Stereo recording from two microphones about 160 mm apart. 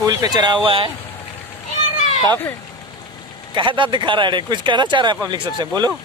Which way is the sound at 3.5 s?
30° right (ahead or behind).